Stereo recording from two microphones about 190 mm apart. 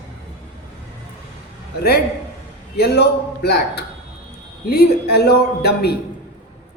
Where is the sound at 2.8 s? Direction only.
60° left (ahead or behind).